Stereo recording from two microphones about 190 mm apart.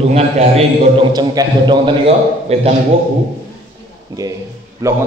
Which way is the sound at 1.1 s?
20° right (ahead or behind).